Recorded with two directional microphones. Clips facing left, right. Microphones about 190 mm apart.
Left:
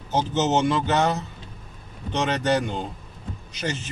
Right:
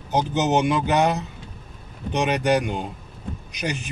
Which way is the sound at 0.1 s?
15° right (ahead or behind).